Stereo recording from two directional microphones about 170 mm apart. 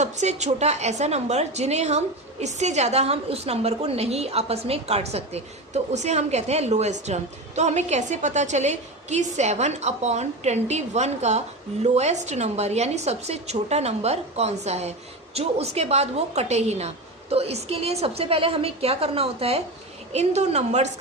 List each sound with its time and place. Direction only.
0.0 s a woman's voice: 45° right (ahead or behind)